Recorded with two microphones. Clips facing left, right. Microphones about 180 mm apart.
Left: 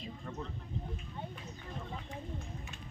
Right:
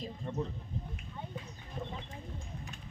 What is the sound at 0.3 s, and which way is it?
Speech, 25° right (ahead or behind).